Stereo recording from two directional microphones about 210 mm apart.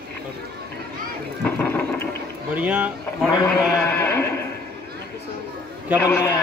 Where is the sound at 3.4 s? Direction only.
10° left (ahead or behind).